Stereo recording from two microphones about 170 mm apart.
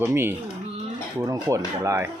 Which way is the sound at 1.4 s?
20° right (ahead or behind).